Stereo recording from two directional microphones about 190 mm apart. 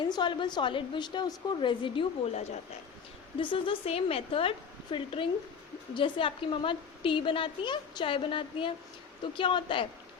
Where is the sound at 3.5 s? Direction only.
25° left (ahead or behind).